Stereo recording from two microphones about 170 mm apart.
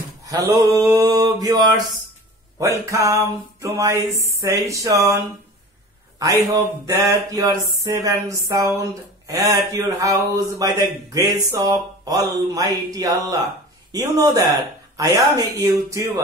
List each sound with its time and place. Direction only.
0.3 s speech: 20° right (ahead or behind)